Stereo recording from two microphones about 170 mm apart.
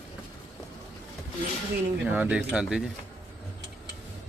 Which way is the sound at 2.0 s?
10° right (ahead or behind).